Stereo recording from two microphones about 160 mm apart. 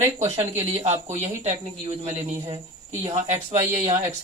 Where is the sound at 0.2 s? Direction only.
40° right (ahead or behind).